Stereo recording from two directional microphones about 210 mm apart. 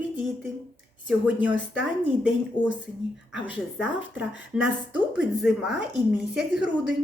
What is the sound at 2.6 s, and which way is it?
Speech, 25° left (ahead or behind).